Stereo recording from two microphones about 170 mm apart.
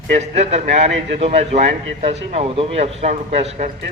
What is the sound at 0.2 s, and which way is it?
A man's voice, 40° right (ahead or behind).